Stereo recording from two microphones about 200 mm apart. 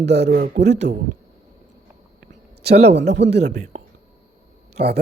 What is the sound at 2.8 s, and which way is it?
Speech, 60° right (ahead or behind).